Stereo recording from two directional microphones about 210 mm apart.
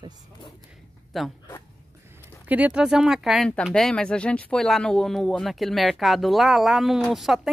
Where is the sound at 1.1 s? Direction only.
Centre (ahead or behind).